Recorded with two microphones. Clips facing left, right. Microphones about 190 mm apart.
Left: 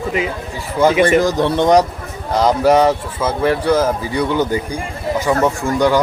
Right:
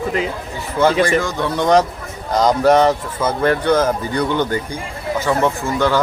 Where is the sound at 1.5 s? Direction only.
20° left (ahead or behind).